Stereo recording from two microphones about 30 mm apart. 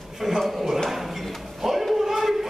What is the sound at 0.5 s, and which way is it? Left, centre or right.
Speech, centre.